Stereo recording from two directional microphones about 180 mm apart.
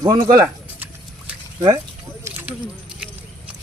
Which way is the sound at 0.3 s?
10° right (ahead or behind).